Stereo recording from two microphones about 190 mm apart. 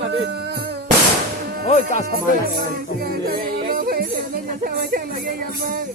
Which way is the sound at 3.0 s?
55° right (ahead or behind).